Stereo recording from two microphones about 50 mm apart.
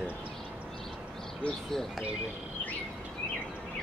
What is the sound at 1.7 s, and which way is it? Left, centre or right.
Speech, centre.